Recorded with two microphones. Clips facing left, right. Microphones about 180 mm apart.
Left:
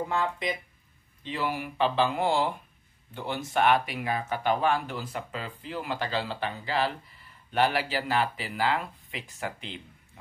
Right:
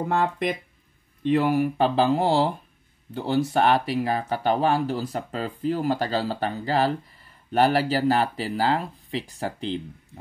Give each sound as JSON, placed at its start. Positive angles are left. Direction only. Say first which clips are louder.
{"t": 0.1, "sound": "speech", "louder": "right 5 dB", "side_deg": -55}